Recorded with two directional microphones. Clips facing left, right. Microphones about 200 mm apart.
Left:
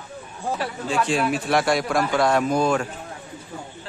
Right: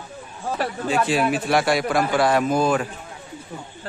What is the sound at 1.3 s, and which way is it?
A man's voice, centre (ahead or behind).